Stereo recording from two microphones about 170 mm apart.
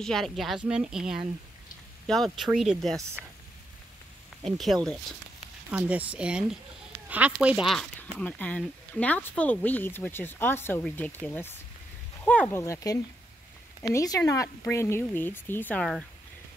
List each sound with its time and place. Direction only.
0.0 s speech: centre (ahead or behind)
4.4 s speech: centre (ahead or behind)
8.2 s speech: 10° left (ahead or behind)